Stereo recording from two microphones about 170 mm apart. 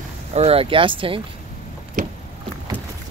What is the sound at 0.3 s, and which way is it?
Speech, 35° right (ahead or behind).